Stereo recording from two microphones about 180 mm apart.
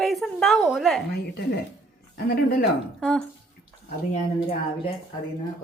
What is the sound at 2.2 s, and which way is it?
Speech, 60° left (ahead or behind).